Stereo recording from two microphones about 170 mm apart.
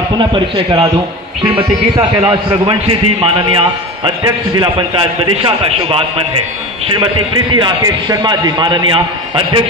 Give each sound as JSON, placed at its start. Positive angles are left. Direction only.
{"t": 0.2, "sound": "a man's voice", "side_deg": -30}